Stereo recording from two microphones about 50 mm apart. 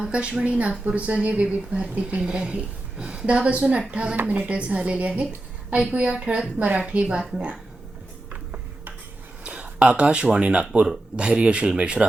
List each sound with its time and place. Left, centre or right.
0.0 s speech: right
4.2 s speech: right
8.3 s a sound: right
10.3 s speech: right